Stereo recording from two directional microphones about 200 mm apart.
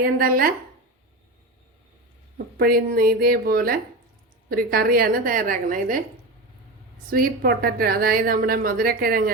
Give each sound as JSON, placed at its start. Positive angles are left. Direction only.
{"t": 0.0, "sound": "a woman's voice", "side_deg": -45}
{"t": 2.6, "sound": "a woman's voice", "side_deg": -45}
{"t": 7.1, "sound": "a woman's voice", "side_deg": -45}